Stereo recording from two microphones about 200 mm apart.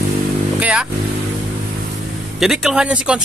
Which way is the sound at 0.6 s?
5° right (ahead or behind).